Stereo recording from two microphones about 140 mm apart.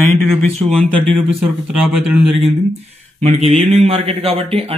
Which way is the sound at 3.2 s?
50° right (ahead or behind).